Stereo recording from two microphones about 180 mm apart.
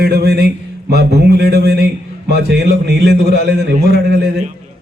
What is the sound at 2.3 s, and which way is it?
A man's voice, 65° right (ahead or behind).